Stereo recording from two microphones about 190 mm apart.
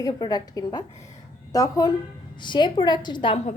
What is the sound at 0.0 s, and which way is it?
A woman's voice, 20° left (ahead or behind).